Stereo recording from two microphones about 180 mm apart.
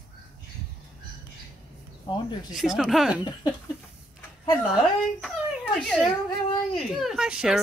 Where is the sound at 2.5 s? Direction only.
Centre (ahead or behind).